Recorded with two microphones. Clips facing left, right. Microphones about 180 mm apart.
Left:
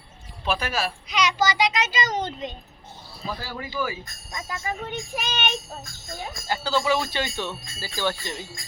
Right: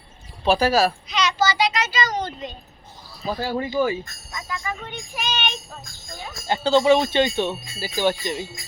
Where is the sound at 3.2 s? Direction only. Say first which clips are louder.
Right 8 dB; 30° right (ahead or behind).